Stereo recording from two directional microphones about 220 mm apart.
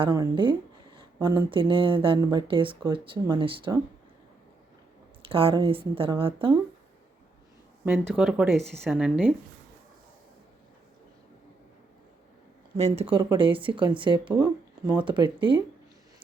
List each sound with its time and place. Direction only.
0.0 s speech: 20° right (ahead or behind)
0.9 s a sound: 20° right (ahead or behind)
1.5 s speech: 25° right (ahead or behind)
5.3 s speech: 25° right (ahead or behind)
7.9 s speech: centre (ahead or behind)
12.7 s speech: 25° right (ahead or behind)